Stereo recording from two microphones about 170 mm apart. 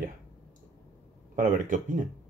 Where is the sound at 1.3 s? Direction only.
50° right (ahead or behind).